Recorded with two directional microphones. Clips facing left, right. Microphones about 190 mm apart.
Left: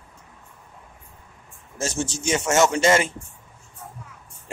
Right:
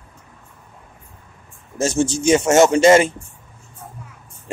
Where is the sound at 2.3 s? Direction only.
30° right (ahead or behind).